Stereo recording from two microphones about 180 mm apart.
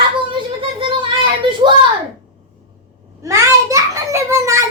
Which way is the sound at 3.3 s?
15° right (ahead or behind).